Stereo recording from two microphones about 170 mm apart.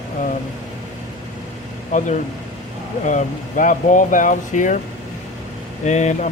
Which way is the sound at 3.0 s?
50° left (ahead or behind).